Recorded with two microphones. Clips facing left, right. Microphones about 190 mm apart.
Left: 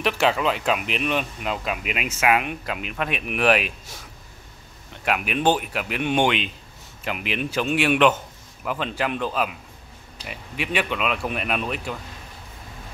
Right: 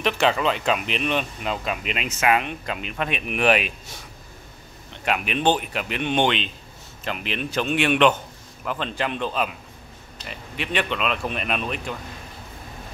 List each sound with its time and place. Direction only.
0.0 s speech: 5° left (ahead or behind)
5.0 s speech: 5° left (ahead or behind)